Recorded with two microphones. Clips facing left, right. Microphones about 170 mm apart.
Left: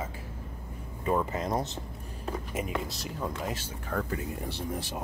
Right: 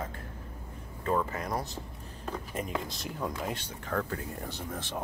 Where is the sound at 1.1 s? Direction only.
15° left (ahead or behind).